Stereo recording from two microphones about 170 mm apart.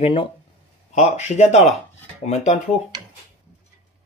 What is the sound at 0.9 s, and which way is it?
Speech, 45° left (ahead or behind).